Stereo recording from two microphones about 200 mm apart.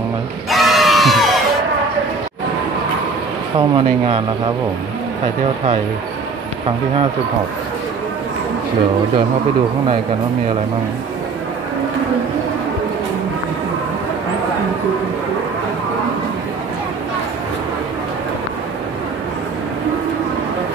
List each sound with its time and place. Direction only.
0.5 s crowd: centre (ahead or behind)
3.5 s speech: 25° right (ahead or behind)